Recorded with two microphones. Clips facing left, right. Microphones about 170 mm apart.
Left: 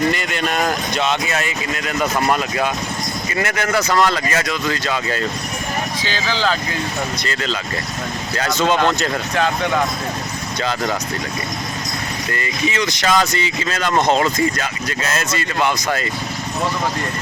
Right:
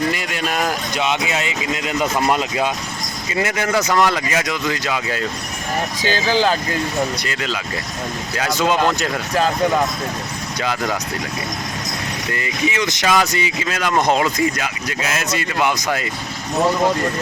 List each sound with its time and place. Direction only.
0.1 s speech: 5° right (ahead or behind)
6.0 s speech: 45° right (ahead or behind)
7.2 s speech: 10° right (ahead or behind)
10.6 s speech: 10° right (ahead or behind)
12.3 s speech: 15° right (ahead or behind)